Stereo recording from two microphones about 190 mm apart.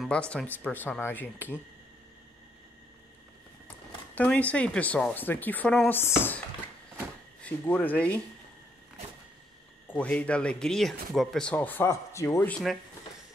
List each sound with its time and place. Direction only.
0.0 s speech: 5° left (ahead or behind)
4.1 s speech: 10° left (ahead or behind)
7.4 s speech: 10° left (ahead or behind)
9.8 s speech: 5° left (ahead or behind)